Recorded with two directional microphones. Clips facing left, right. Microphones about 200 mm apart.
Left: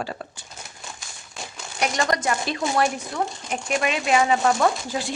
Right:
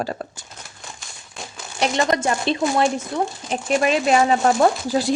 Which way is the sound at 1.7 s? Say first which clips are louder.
Right 4 dB; 25° right (ahead or behind).